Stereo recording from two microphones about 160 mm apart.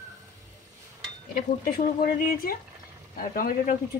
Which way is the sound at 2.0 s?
65° left (ahead or behind).